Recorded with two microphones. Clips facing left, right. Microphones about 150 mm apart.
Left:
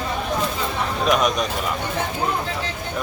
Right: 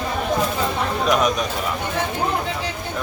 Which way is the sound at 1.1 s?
Centre (ahead or behind).